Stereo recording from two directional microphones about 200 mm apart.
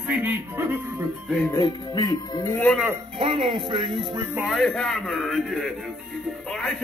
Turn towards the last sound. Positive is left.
turn(degrees=0)  # may be behind; listen again after turning